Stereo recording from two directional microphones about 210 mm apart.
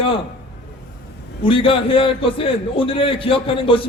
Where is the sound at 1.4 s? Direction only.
25° left (ahead or behind).